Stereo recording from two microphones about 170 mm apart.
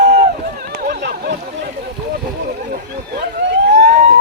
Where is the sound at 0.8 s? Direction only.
65° right (ahead or behind).